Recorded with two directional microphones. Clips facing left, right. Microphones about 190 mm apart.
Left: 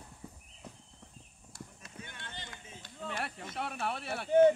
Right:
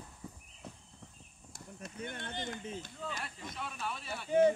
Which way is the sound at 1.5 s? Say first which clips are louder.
Right 3 dB; 50° right (ahead or behind).